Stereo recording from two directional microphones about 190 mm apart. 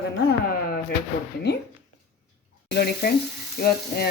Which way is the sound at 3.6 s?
55° left (ahead or behind).